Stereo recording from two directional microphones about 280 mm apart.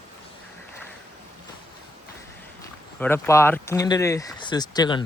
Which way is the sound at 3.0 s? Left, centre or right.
Centre.